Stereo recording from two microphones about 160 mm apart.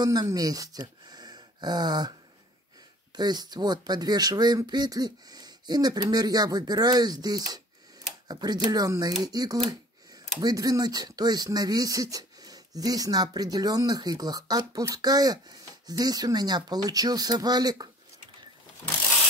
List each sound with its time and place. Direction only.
0.0 s speech: 25° right (ahead or behind)
3.2 s speech: 25° right (ahead or behind)